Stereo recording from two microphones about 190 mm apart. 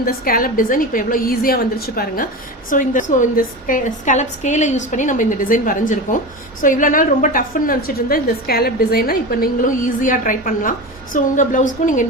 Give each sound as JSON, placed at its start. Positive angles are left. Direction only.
{"t": 0.0, "sound": "a woman's voice", "side_deg": 50}